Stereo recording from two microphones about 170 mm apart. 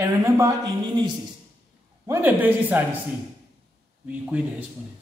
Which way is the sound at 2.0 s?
15° right (ahead or behind).